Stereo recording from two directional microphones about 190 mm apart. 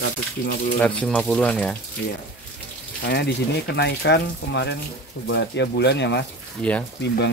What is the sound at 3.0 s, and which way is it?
Speech, 65° left (ahead or behind).